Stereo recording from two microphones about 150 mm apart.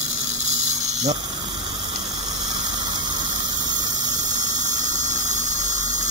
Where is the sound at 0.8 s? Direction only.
50° right (ahead or behind).